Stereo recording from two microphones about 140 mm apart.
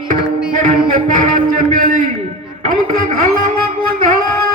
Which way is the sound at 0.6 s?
75° right (ahead or behind).